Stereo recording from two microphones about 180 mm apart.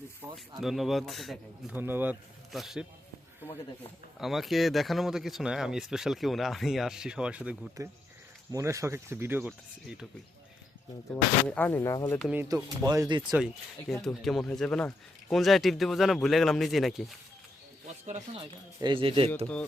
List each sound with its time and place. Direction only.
0.2 s snake: 10° right (ahead or behind)
0.6 s speech: centre (ahead or behind)
1.7 s speech: 10° right (ahead or behind)
4.2 s speech: centre (ahead or behind)
8.5 s speech: 15° right (ahead or behind)
11.4 s speech: 10° left (ahead or behind)
12.2 s speech: 10° right (ahead or behind)
12.5 s speech: 20° right (ahead or behind)
13.3 s speech: 5° right (ahead or behind)
18.0 s speech: 40° right (ahead or behind)
18.8 s speech: 25° right (ahead or behind)